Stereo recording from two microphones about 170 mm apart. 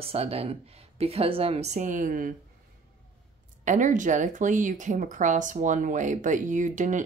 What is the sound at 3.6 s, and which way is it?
Speech, 50° right (ahead or behind).